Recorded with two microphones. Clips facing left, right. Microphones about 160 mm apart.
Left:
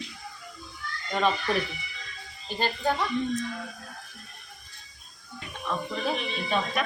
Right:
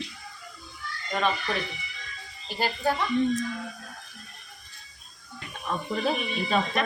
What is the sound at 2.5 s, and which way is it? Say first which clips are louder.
Speech: even; 10° right (ahead or behind).